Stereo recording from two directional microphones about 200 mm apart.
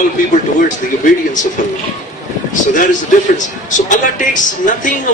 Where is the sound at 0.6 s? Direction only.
40° left (ahead or behind).